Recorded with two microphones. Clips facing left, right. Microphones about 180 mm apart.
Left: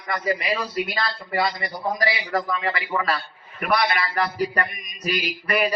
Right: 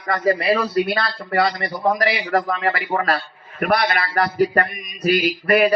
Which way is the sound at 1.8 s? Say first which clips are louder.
Right 6 dB; 65° right (ahead or behind).